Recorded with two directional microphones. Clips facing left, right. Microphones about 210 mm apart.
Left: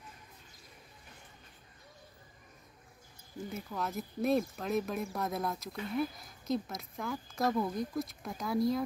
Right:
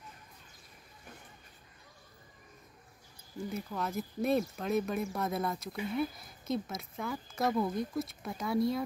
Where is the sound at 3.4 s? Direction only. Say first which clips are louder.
Right 2 dB; centre (ahead or behind).